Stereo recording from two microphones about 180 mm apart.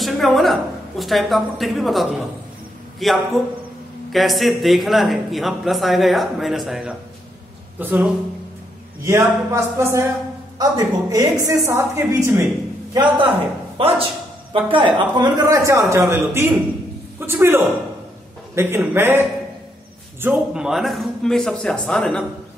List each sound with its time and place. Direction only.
0.0 s a woman's voice: centre (ahead or behind)
12.9 s a man's voice: 25° right (ahead or behind); by 22.2 s 5° left (ahead or behind)